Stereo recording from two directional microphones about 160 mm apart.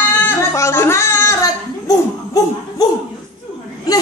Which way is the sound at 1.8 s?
25° left (ahead or behind).